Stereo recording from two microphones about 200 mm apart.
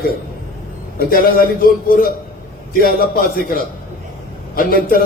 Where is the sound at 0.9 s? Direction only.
45° left (ahead or behind).